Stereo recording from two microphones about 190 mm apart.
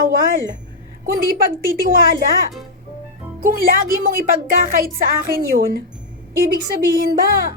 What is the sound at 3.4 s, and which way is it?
Speech, 50° right (ahead or behind).